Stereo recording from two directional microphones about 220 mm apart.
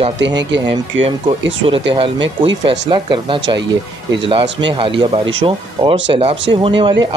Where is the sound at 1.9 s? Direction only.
25° right (ahead or behind).